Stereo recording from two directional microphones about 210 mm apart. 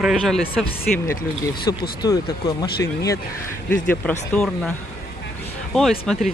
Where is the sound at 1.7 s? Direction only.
15° left (ahead or behind).